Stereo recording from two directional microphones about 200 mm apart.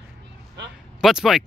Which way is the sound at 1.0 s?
Centre (ahead or behind).